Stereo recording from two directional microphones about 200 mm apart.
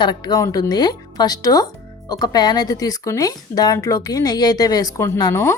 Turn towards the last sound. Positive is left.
turn(degrees=15)  # may be behind; listen again after turning